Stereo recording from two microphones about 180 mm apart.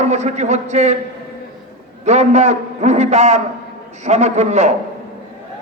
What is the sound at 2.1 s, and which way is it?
A man's voice, 40° right (ahead or behind).